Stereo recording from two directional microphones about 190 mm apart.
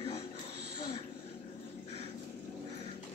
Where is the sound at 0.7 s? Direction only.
25° left (ahead or behind).